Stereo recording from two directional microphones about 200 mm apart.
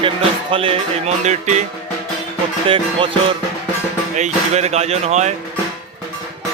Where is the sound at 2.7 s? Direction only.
25° right (ahead or behind).